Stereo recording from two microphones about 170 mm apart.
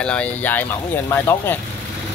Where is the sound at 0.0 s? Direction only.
5° left (ahead or behind).